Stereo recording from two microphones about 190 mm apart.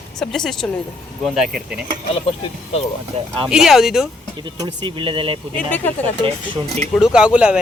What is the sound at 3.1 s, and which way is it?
Speech, 30° right (ahead or behind).